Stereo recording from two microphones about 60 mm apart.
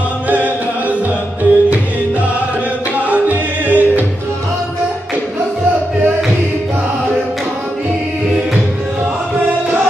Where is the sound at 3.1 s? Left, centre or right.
Right.